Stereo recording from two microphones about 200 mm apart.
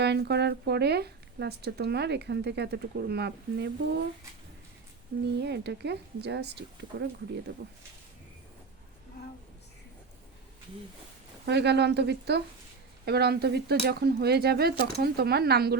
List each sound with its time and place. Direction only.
0.0 s speech: 55° right (ahead or behind)
5.4 s speech: 60° right (ahead or behind)
11.4 s speech: 60° right (ahead or behind)